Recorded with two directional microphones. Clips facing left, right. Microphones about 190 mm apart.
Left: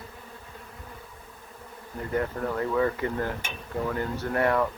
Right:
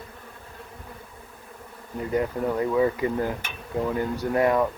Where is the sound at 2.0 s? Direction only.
20° right (ahead or behind).